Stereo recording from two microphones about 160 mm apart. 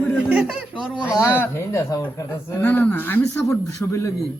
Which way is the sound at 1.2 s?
15° left (ahead or behind).